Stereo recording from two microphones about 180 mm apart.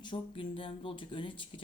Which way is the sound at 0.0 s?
30° left (ahead or behind).